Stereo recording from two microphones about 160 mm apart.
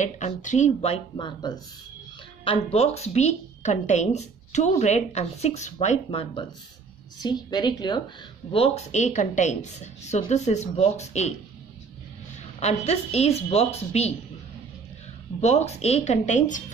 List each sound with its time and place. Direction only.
0.0 s a woman's voice: 50° left (ahead or behind)
7.2 s speech: 25° left (ahead or behind)
8.5 s a woman's voice: 40° left (ahead or behind)
12.5 s a woman's voice: 45° left (ahead or behind)
15.4 s a woman's voice: 45° left (ahead or behind)